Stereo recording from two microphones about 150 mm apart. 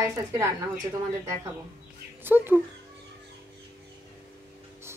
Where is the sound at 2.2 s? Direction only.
15° right (ahead or behind).